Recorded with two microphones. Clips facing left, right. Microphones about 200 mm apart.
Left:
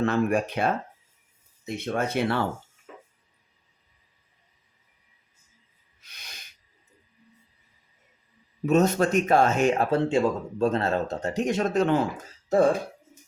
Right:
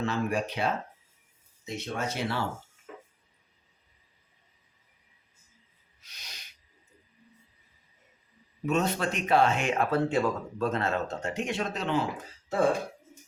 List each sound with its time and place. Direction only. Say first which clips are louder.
0.0 s speech: left 6 dB; 55° left (ahead or behind)
6.1 s owl: left 2 dB; 55° left (ahead or behind)
8.6 s speech: left 7 dB; 40° left (ahead or behind)